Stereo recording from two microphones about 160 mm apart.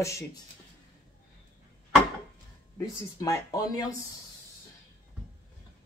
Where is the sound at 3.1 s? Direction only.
20° left (ahead or behind).